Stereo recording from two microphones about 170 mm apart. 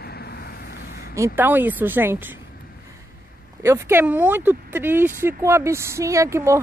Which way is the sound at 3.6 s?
15° right (ahead or behind).